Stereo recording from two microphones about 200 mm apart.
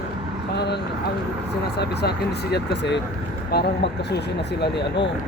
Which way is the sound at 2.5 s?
60° left (ahead or behind).